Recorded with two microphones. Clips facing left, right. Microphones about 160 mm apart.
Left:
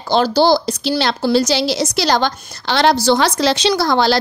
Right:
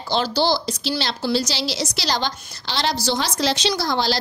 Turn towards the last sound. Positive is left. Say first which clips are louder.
# left 7 dB
turn(degrees=60)  # may be behind; listen again after turning